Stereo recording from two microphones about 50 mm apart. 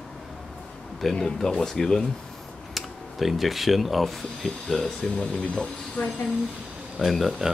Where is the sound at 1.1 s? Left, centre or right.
Centre.